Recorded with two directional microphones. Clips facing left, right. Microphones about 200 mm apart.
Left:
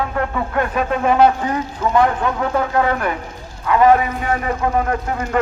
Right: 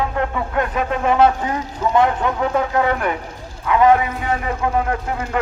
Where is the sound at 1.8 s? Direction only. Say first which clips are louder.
Even; 20° right (ahead or behind).